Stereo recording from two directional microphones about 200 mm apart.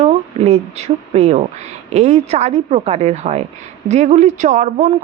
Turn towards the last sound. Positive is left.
turn(degrees=-35)  # may be behind; listen again after turning